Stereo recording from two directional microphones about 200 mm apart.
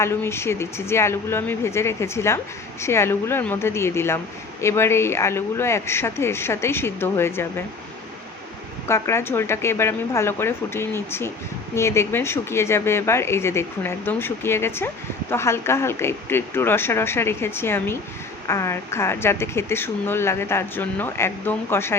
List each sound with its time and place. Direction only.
0.0 s speech: 15° left (ahead or behind)
8.9 s speech: 15° left (ahead or behind)